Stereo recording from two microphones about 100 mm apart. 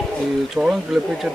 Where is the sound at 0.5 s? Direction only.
5° right (ahead or behind).